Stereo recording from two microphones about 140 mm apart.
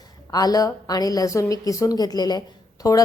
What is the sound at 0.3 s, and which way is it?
A woman's voice, 25° left (ahead or behind).